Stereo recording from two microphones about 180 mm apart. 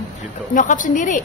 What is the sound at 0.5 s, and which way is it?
Speech, 45° left (ahead or behind).